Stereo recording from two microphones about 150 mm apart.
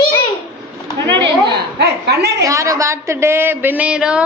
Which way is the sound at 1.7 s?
90° right.